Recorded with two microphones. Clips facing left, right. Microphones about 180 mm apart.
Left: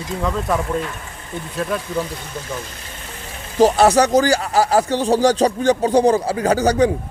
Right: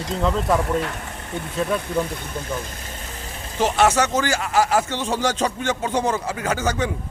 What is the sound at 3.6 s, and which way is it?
Speech, 35° left (ahead or behind).